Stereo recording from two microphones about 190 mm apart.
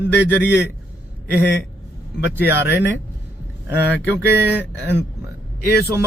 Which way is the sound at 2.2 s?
10° right (ahead or behind).